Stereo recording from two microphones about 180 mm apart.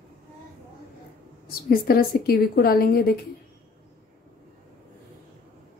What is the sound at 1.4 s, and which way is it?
A woman's voice, 55° left (ahead or behind).